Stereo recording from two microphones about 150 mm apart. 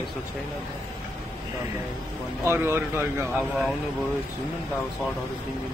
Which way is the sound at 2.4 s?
15° right (ahead or behind).